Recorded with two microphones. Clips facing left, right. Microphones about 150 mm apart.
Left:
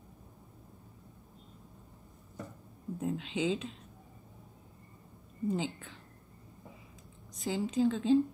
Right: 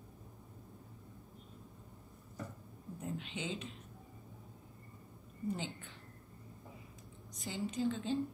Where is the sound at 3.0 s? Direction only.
90° left.